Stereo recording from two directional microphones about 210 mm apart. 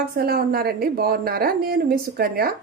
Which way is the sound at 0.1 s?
45° right (ahead or behind).